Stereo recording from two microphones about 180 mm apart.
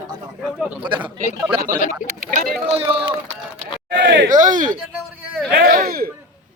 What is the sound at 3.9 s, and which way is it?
Speech, 70° right (ahead or behind).